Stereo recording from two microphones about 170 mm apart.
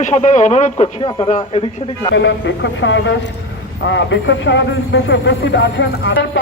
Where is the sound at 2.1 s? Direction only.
90° left.